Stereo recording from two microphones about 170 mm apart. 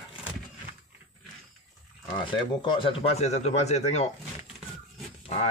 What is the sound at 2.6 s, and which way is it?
Speech, 30° left (ahead or behind).